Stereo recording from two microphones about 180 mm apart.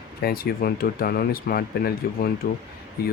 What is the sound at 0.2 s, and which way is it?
Speech, 60° left (ahead or behind).